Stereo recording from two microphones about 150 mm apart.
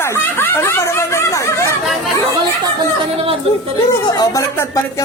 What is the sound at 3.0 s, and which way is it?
Speech, 40° right (ahead or behind).